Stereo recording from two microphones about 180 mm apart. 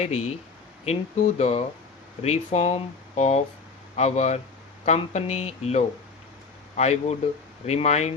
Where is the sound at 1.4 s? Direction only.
40° left (ahead or behind).